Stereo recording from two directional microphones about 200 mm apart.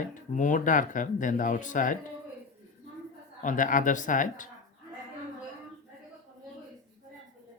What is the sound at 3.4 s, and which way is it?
Speech, 40° left (ahead or behind).